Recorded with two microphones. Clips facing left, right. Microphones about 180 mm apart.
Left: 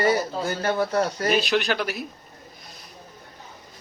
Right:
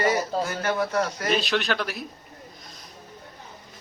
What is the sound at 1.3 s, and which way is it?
Speech, centre (ahead or behind).